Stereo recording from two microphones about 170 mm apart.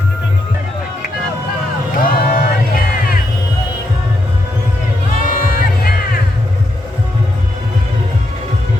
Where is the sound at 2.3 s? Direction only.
55° left (ahead or behind).